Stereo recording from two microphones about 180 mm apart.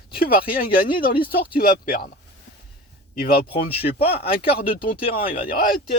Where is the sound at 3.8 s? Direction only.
35° left (ahead or behind).